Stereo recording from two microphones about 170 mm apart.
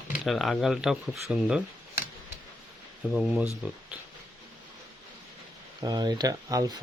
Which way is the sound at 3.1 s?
5° right (ahead or behind).